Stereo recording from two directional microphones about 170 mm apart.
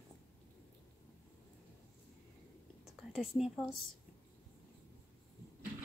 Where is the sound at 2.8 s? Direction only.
Centre (ahead or behind).